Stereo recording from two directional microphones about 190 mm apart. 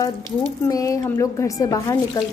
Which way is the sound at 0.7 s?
20° left (ahead or behind).